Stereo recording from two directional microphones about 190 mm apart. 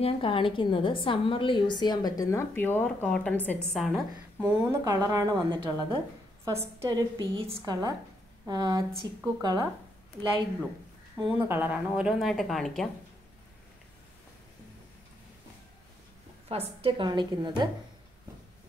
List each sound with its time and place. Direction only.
0.0 s a woman's voice: 25° left (ahead or behind); by 9.7 s 20° right (ahead or behind)
11.1 s a woman's voice: 15° right (ahead or behind); by 12.9 s centre (ahead or behind)
16.4 s a woman's voice: 30° right (ahead or behind)